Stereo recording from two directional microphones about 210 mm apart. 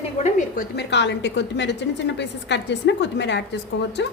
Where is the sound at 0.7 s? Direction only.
55° left (ahead or behind).